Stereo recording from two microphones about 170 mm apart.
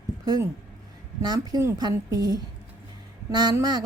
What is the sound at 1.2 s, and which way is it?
Speech, 25° right (ahead or behind).